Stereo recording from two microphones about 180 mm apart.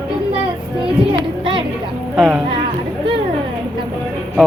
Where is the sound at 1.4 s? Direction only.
30° right (ahead or behind).